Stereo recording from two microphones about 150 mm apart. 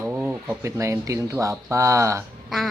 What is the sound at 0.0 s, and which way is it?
Speech, 15° right (ahead or behind).